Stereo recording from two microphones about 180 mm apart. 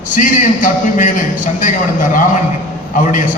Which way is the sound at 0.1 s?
45° left (ahead or behind).